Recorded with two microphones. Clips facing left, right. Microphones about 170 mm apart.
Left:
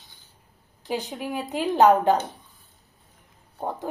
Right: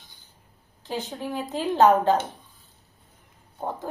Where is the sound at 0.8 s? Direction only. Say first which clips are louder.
Left 2 dB; 15° left (ahead or behind).